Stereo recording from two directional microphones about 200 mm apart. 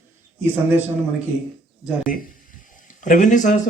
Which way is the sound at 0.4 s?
10° right (ahead or behind).